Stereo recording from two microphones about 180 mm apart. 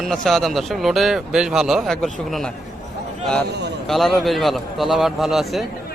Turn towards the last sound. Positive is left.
turn(degrees=0)  # may be behind; listen again after turning